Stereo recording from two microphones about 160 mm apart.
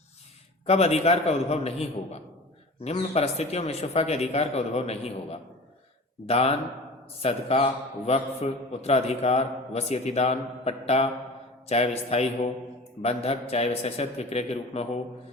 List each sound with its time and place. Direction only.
0.6 s a man's voice: 40° left (ahead or behind)
2.8 s a man's voice: 40° left (ahead or behind)